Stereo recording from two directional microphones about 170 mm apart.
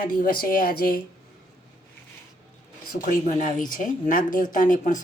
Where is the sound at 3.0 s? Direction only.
50° left (ahead or behind).